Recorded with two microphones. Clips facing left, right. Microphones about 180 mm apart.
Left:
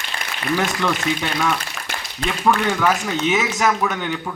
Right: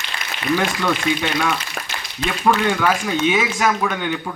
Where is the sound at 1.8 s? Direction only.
45° right (ahead or behind).